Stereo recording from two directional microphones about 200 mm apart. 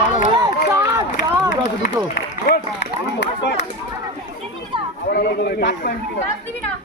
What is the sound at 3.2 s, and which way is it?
Speech, 60° left (ahead or behind).